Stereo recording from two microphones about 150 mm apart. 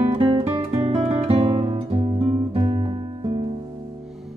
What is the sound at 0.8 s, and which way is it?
Guitar, 40° right (ahead or behind).